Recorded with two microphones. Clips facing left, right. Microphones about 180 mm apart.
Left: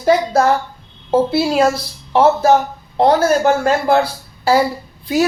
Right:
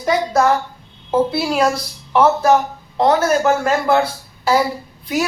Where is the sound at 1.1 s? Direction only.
25° left (ahead or behind).